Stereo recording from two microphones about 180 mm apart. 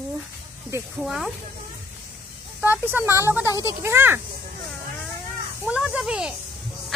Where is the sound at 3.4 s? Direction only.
20° left (ahead or behind).